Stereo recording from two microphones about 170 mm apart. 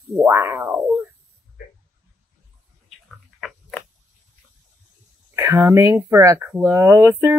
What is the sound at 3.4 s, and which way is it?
Biting, centre (ahead or behind).